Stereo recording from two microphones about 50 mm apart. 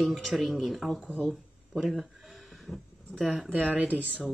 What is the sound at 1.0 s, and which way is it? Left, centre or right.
Speech, left.